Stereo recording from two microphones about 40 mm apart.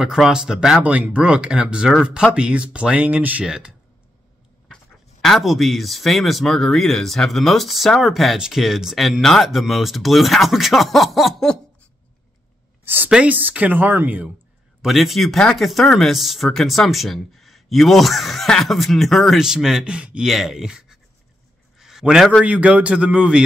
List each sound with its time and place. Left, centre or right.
0.0 s speech: centre; by 3.2 s right
3.2 s speech: right
3.4 s speech: centre
5.4 s speech: centre
9.2 s speech: centre
12.8 s a sound: right
13.2 s speech: right
14.8 s speech: centre
19.4 s speech: centre
19.8 s speech: right
20.2 s speech: centre
21.7 s a sound: centre
22.4 s speech: right